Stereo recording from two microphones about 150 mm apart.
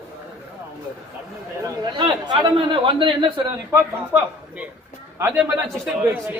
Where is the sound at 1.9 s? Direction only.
30° right (ahead or behind).